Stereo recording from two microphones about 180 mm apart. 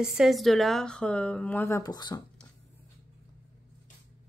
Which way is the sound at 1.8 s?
20° left (ahead or behind).